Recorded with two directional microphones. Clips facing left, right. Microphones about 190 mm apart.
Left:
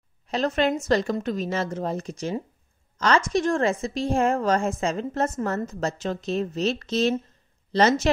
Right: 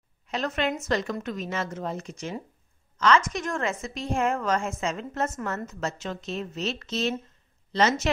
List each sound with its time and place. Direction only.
0.3 s a woman's voice: 35° left (ahead or behind)